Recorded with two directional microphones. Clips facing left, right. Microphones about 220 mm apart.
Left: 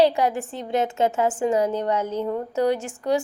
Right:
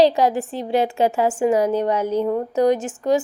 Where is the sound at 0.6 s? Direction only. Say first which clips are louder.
Right 3 dB; 35° right (ahead or behind).